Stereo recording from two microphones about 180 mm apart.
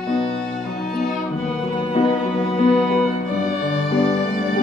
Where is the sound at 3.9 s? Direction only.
35° left (ahead or behind).